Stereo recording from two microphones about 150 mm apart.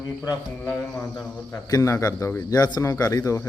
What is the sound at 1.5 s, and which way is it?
A man's voice, 20° left (ahead or behind).